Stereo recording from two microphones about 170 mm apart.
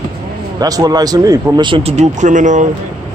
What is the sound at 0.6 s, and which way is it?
Speech, 20° right (ahead or behind).